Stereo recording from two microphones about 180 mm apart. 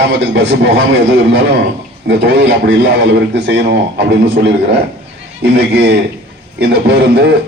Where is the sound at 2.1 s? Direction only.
70° right (ahead or behind).